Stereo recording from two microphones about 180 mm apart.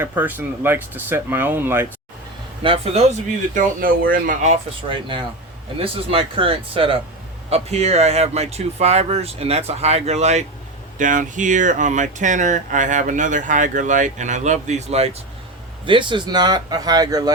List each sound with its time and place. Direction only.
0.0 s speech: 10° right (ahead or behind)
2.6 s speech: 35° right (ahead or behind)
4.9 s speech: 25° right (ahead or behind)